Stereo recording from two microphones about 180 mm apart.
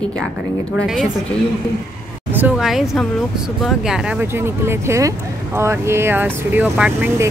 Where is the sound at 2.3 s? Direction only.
5° right (ahead or behind).